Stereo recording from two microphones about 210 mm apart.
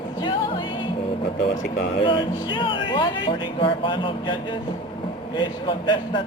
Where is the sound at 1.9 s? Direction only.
25° left (ahead or behind).